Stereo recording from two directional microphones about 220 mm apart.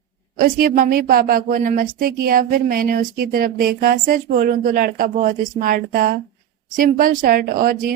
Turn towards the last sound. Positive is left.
turn(degrees=-40)  # may be behind; listen again after turning